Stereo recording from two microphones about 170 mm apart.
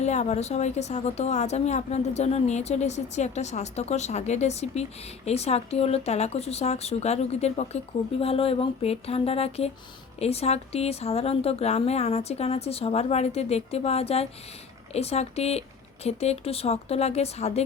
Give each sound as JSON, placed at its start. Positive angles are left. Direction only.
{"t": 0.0, "sound": "a woman's voice", "side_deg": 40}